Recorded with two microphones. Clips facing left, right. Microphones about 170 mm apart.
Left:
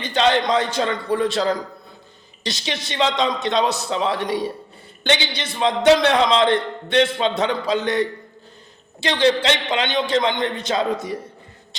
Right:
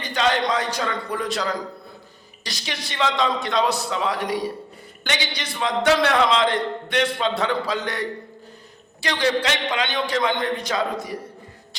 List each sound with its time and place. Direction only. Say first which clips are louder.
0.0 s a man's voice: left 3 dB; 25° left (ahead or behind)